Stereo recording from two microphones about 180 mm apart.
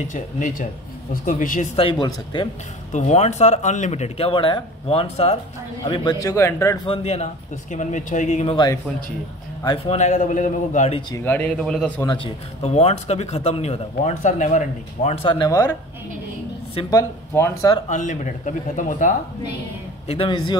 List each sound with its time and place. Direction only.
0.0 s speech: 45° left (ahead or behind)
1.8 s speech: 25° left (ahead or behind)
2.9 s speech: 40° left (ahead or behind)
5.9 s speech: 20° left (ahead or behind)
6.9 s speech: 35° left (ahead or behind)
9.8 s speech: 40° left (ahead or behind)
11.2 s speech: 10° left (ahead or behind)
12.6 s speech: 35° left (ahead or behind)
15.2 s speech: 20° left (ahead or behind)
16.9 s speech: 15° left (ahead or behind)
17.8 s speech: 45° left (ahead or behind)
20.1 s speech: 30° left (ahead or behind)